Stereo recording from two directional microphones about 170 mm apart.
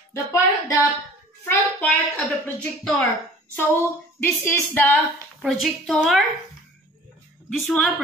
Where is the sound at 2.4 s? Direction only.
5° left (ahead or behind).